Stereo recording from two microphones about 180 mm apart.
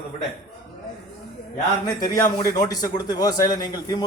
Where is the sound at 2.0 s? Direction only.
20° left (ahead or behind).